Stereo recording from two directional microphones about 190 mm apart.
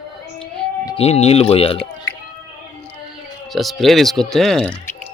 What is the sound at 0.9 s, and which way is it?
Speech, 35° left (ahead or behind).